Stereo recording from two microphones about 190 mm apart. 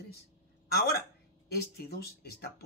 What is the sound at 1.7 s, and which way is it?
Speech, 55° left (ahead or behind).